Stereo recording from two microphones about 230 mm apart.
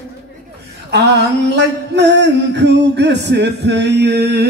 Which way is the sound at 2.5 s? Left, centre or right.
Right.